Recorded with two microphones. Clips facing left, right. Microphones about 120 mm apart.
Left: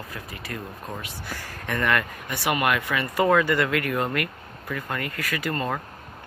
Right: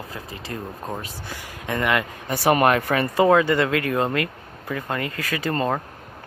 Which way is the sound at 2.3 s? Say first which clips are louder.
Right 6 dB; 35° right (ahead or behind).